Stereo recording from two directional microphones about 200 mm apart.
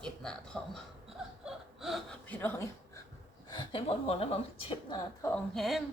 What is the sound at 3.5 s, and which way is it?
Speech, 25° left (ahead or behind).